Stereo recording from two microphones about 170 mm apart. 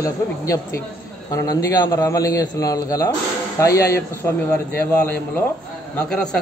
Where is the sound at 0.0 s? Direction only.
20° left (ahead or behind).